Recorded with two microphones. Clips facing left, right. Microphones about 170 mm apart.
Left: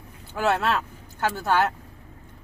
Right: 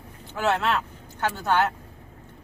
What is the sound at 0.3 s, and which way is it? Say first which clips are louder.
Speech: left 1 dB; 5° left (ahead or behind).